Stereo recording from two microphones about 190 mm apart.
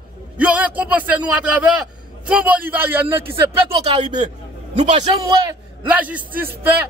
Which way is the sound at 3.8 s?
40° right (ahead or behind).